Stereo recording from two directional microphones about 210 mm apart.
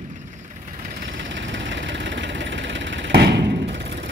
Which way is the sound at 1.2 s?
60° right (ahead or behind).